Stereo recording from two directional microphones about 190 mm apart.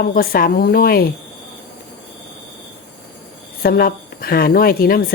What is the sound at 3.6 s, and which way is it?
Speech, 50° left (ahead or behind).